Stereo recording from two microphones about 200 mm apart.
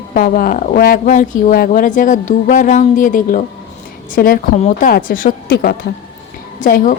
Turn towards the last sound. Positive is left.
turn(degrees=40)  # may be behind; listen again after turning